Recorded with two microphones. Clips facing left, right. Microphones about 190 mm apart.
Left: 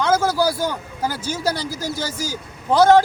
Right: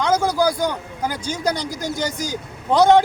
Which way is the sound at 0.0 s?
5° left (ahead or behind).